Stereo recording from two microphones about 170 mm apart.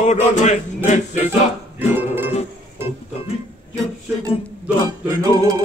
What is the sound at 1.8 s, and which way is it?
Music, 10° right (ahead or behind).